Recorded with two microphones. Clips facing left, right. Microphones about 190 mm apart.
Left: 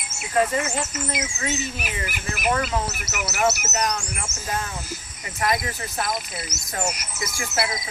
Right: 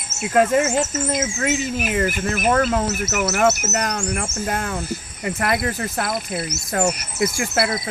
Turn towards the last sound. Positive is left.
turn(degrees=-55)  # may be behind; listen again after turning